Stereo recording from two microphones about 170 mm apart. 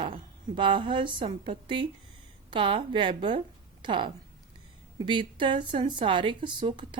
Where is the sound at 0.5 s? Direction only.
30° right (ahead or behind).